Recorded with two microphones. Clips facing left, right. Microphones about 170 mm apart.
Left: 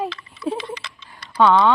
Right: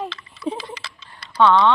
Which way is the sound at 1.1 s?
10° left (ahead or behind).